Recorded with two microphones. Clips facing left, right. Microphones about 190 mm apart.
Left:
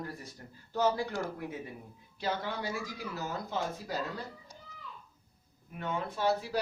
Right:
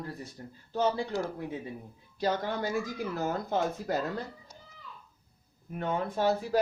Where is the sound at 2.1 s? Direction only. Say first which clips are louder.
Right 5 dB; 45° right (ahead or behind).